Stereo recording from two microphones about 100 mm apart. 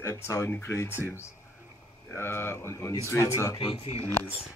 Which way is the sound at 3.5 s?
55° left (ahead or behind).